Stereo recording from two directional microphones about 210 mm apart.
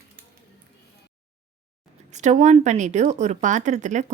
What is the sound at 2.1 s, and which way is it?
A woman's voice, 35° right (ahead or behind).